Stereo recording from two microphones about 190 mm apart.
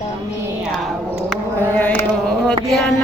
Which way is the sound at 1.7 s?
10° left (ahead or behind).